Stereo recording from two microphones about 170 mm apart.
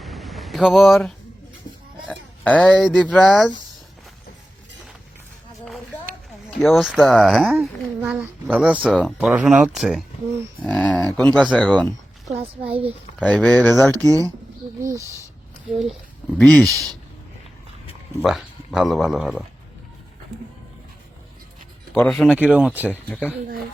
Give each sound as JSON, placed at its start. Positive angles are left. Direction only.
{"t": 0.0, "sound": "a sound", "side_deg": 0}
{"t": 2.0, "sound": "speech", "side_deg": 10}
{"t": 6.6, "sound": "speech", "side_deg": 0}
{"t": 13.1, "sound": "speech", "side_deg": 5}
{"t": 13.9, "sound": "speech", "side_deg": -20}
{"t": 16.4, "sound": "speech", "side_deg": 5}
{"t": 18.2, "sound": "speech", "side_deg": 0}
{"t": 21.9, "sound": "speech", "side_deg": 5}
{"t": 22.9, "sound": "speech", "side_deg": 10}